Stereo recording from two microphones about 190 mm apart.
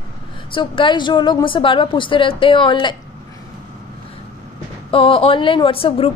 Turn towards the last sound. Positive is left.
turn(degrees=30)  # may be behind; listen again after turning